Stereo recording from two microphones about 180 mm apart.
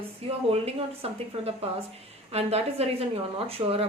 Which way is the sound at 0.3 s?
35° right (ahead or behind).